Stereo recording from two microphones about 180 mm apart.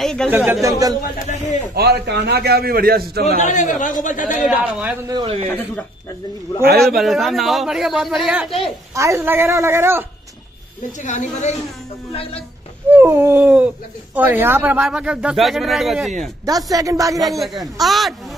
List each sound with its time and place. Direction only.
0.0 s speech: 5° left (ahead or behind)
0.3 s speech: 10° right (ahead or behind)
1.8 s a man's voice: 65° right (ahead or behind)
3.3 s a man's voice: 45° left (ahead or behind)
4.6 s speech: 5° right (ahead or behind)
5.0 s speech: 25° right (ahead or behind)
5.5 s a man's voice: 10° left (ahead or behind)
8.9 s speech: 15° right (ahead or behind)
11.0 s a man's voice: 45° left (ahead or behind)
12.9 s a man's voice: 15° right (ahead or behind)
16.4 s speech: 20° right (ahead or behind)
17.3 s a man's voice: centre (ahead or behind)